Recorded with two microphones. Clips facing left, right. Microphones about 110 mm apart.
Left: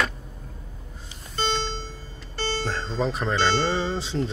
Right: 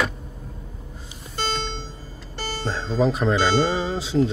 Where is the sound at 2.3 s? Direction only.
10° right (ahead or behind).